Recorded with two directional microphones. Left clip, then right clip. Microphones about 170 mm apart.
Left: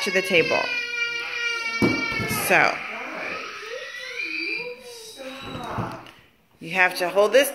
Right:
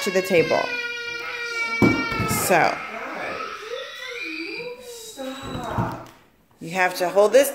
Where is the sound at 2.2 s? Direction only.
15° right (ahead or behind).